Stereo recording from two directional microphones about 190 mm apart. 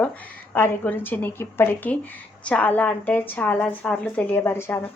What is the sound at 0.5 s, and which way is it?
A woman's voice, 10° left (ahead or behind).